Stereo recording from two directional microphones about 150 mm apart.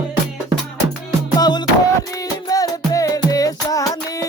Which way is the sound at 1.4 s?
30° left (ahead or behind).